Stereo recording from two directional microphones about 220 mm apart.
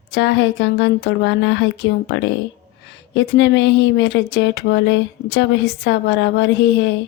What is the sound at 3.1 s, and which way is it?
Speech, 55° left (ahead or behind).